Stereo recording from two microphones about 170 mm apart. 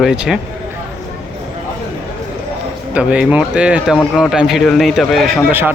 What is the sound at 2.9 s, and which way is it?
Speech, 5° right (ahead or behind).